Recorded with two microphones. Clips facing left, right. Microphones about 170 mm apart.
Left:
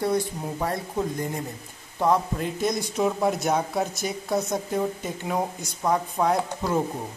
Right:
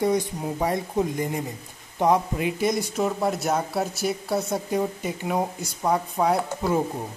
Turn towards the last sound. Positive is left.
turn(degrees=-5)  # may be behind; listen again after turning